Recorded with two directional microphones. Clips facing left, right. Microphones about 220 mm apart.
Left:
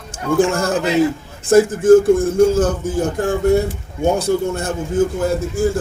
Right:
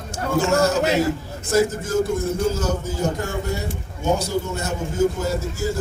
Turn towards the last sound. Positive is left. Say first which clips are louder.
# left 7 dB
turn(degrees=55)  # may be behind; listen again after turning